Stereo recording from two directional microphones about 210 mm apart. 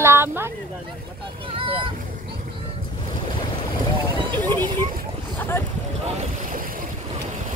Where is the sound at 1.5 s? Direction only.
25° right (ahead or behind).